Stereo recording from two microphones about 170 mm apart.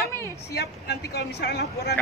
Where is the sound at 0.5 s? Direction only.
75° left (ahead or behind).